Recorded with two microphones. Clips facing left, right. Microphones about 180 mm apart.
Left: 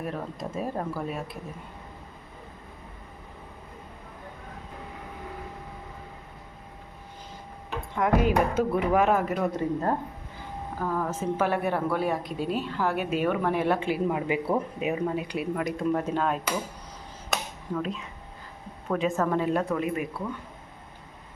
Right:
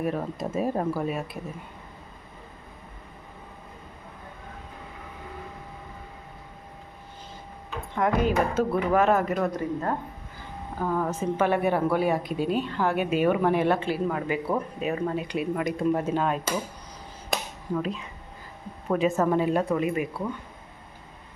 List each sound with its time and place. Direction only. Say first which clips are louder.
0.0 s a woman's voice: right 5 dB; 5° right (ahead or behind)
7.9 s a woman's voice: even; 5° left (ahead or behind)
9.5 s speech: left 1 dB; 25° left (ahead or behind)
10.8 s a woman's voice: right 2 dB; centre (ahead or behind)
13.7 s a woman's voice: even; 15° left (ahead or behind); by 16.4 s 5° right (ahead or behind)
17.7 s a woman's voice: right 2 dB; centre (ahead or behind)